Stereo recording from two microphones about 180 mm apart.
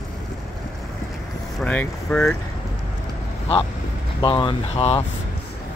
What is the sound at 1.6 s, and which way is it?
Speech, 5° left (ahead or behind).